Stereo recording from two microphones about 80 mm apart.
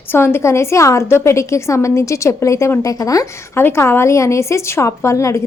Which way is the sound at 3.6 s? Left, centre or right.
Left.